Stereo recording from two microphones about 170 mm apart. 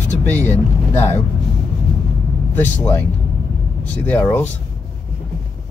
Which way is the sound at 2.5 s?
10° left (ahead or behind).